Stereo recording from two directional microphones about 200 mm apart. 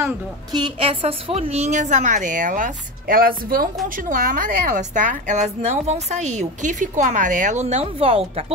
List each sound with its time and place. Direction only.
0.5 s a woman's voice: 20° right (ahead or behind)